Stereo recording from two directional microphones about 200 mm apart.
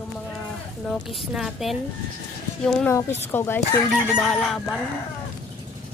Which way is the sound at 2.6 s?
10° left (ahead or behind).